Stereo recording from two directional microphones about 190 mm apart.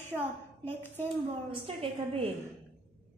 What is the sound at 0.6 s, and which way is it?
Speech, 10° left (ahead or behind).